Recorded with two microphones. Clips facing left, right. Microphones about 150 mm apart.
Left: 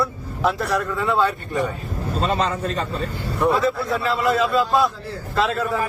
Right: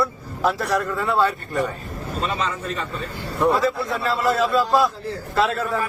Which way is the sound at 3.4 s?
Centre (ahead or behind).